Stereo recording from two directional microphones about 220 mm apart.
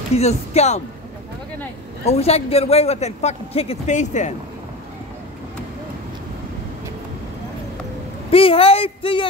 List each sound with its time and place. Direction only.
0.1 s speech: 30° left (ahead or behind)
2.0 s speech: 30° left (ahead or behind)
8.3 s speech: 25° left (ahead or behind)